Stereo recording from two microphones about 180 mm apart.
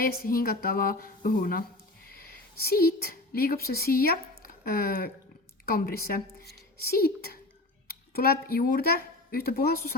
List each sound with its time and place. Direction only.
0.0 s a woman's voice: 55° left (ahead or behind)